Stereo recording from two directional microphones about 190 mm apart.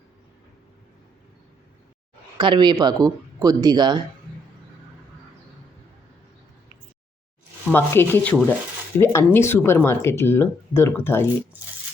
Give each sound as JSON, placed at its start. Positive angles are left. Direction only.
{"t": 2.4, "sound": "speech", "side_deg": -25}
{"t": 7.7, "sound": "speech", "side_deg": 10}